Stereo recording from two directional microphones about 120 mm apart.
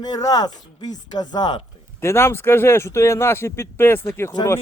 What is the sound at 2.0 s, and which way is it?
Speech, 20° left (ahead or behind).